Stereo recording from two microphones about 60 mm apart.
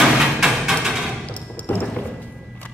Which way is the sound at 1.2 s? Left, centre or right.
Left.